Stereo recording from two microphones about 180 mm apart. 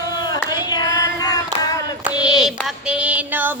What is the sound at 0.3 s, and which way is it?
Hands, 20° left (ahead or behind).